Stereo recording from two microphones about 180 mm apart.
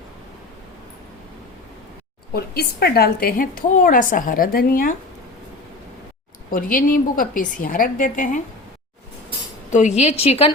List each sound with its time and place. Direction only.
2.3 s a woman's voice: 60° left (ahead or behind)
6.5 s a woman's voice: 50° left (ahead or behind)
9.6 s a woman's voice: 45° left (ahead or behind)